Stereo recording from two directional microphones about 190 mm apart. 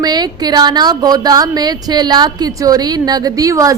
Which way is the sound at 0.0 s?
20° right (ahead or behind).